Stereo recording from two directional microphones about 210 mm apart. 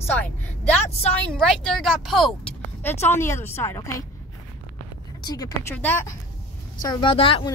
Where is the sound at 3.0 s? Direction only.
10° left (ahead or behind).